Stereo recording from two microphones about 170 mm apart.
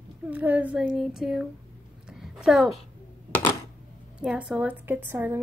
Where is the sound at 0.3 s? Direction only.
10° right (ahead or behind).